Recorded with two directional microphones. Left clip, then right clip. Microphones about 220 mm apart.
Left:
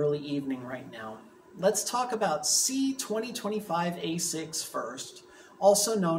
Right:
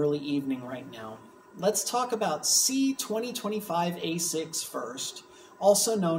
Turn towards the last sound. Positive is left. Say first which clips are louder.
# right 1 dB
turn(degrees=-10)  # may be behind; listen again after turning